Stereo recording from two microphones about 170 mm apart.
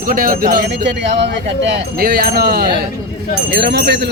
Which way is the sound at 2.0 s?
60° right (ahead or behind).